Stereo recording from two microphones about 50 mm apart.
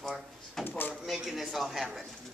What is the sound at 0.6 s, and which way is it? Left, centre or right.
Speech, left.